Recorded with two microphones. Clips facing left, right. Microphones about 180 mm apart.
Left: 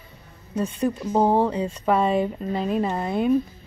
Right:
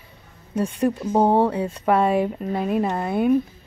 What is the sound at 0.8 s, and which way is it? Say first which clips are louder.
Speech: right 2 dB; 10° right (ahead or behind).